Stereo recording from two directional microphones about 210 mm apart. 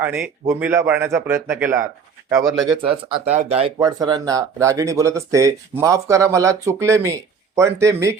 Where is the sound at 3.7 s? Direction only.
20° right (ahead or behind).